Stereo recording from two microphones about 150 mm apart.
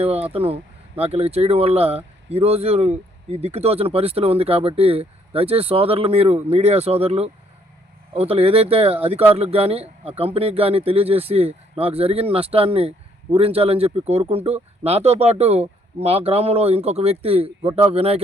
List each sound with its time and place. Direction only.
0.0 s speech: 40° right (ahead or behind)